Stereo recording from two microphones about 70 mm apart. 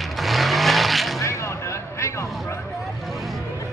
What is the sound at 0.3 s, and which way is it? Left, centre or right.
Vehicle, centre.